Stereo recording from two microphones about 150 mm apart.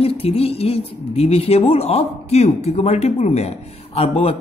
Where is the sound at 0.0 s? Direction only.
40° left (ahead or behind).